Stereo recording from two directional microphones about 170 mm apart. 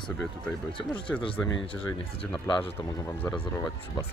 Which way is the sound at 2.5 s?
10° left (ahead or behind).